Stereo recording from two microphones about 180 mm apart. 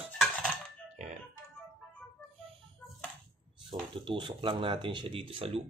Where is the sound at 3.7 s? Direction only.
25° right (ahead or behind).